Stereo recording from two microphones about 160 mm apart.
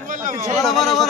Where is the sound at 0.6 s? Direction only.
Centre (ahead or behind).